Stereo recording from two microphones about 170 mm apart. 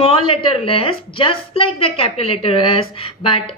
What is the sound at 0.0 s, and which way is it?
A woman's voice, 35° left (ahead or behind).